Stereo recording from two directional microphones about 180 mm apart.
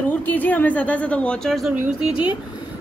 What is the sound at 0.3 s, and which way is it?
Speech, 10° left (ahead or behind).